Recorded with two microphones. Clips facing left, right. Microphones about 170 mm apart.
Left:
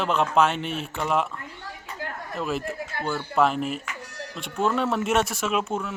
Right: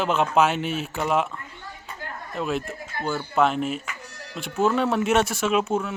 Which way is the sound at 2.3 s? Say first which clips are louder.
Right 1 dB; centre (ahead or behind).